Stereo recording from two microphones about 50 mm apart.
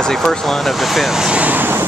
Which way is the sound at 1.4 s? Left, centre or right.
Right.